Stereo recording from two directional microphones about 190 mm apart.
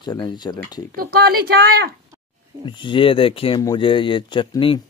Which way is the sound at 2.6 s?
25° left (ahead or behind).